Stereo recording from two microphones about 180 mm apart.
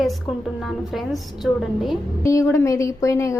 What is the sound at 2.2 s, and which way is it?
A woman's voice, 15° left (ahead or behind).